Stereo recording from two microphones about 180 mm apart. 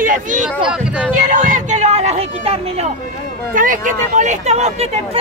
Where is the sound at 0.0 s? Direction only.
45° right (ahead or behind).